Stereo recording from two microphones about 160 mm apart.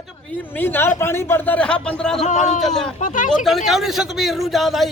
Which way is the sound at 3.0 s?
55° left (ahead or behind).